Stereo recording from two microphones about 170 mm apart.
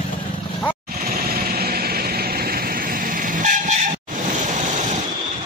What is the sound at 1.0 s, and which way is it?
Vehicle, 60° right (ahead or behind).